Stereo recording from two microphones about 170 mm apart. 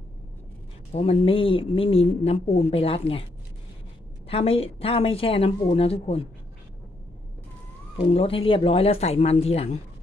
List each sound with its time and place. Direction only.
0.9 s a woman's voice: 35° left (ahead or behind)
4.3 s a woman's voice: 35° left (ahead or behind)
8.0 s a woman's voice: 35° left (ahead or behind)